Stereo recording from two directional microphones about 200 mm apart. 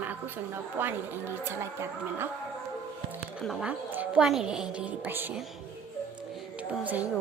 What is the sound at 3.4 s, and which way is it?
A woman's voice, 5° right (ahead or behind).